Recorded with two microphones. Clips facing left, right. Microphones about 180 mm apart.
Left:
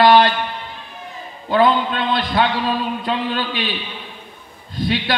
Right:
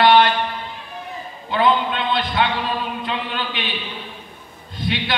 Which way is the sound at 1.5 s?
45° left (ahead or behind).